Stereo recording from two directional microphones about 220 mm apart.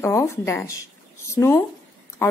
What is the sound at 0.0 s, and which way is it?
A woman's voice, 10° left (ahead or behind).